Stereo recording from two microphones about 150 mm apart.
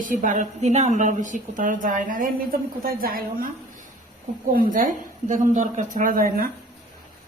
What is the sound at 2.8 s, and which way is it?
Speech, 80° right.